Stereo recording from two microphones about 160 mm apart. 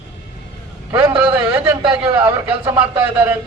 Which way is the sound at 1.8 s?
35° right (ahead or behind).